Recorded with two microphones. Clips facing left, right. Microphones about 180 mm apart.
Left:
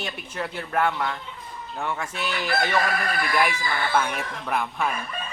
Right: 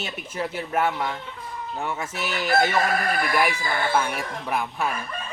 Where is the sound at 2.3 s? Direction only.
45° right (ahead or behind).